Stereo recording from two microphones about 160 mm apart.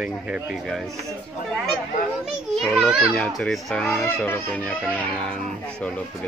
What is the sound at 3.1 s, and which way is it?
Speech, 5° left (ahead or behind).